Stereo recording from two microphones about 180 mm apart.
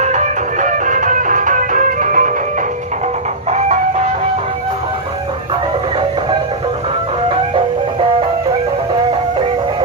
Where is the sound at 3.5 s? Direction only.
40° right (ahead or behind).